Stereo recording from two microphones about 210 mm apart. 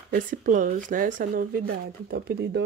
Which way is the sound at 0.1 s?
40° right (ahead or behind).